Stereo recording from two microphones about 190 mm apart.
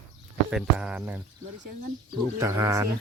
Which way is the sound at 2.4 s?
15° right (ahead or behind).